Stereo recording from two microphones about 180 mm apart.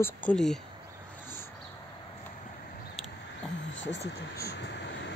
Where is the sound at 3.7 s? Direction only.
85° left.